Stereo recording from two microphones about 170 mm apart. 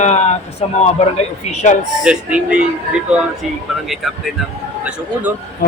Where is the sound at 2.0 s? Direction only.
5° right (ahead or behind).